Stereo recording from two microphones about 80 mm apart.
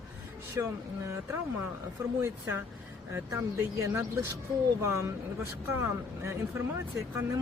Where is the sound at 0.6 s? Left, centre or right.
Right.